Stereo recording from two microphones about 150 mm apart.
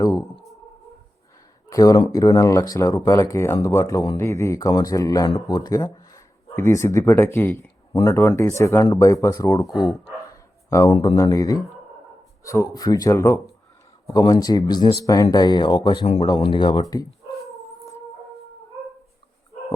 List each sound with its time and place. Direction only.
0.0 s a sound: 20° left (ahead or behind)
1.7 s speech: 25° left (ahead or behind)
9.6 s speech: centre (ahead or behind)
10.7 s speech: 20° left (ahead or behind)